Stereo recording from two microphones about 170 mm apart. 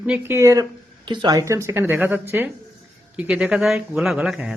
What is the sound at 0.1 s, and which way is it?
Speech, 15° right (ahead or behind).